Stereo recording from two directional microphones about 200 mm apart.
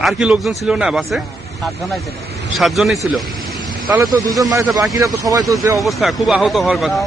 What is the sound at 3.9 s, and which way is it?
Speech, 15° right (ahead or behind).